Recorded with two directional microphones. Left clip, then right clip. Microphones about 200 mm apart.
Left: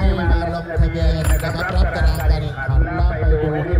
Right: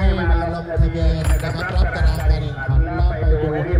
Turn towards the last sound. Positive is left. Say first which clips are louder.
# left 1 dB
turn(degrees=15)  # may be behind; listen again after turning